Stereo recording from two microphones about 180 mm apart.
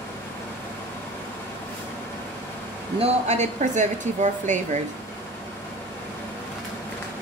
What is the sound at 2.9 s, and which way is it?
Speech, 35° right (ahead or behind).